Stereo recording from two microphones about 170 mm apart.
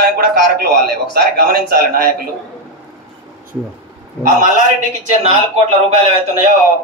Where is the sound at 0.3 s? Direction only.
65° right (ahead or behind).